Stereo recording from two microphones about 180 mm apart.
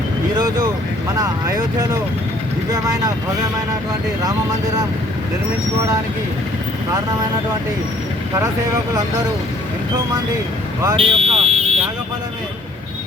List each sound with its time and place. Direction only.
1.1 s speech: 20° right (ahead or behind)
10.8 s speech: 30° right (ahead or behind)